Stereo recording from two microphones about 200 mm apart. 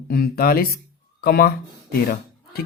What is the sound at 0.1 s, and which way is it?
Speech, 50° left (ahead or behind).